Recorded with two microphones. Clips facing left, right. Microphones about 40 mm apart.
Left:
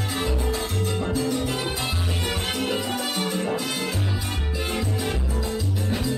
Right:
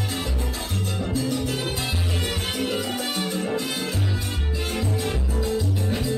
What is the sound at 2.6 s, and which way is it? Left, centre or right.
Music, centre.